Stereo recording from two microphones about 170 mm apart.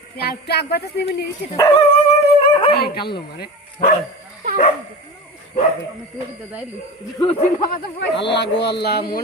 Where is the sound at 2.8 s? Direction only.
65° left (ahead or behind).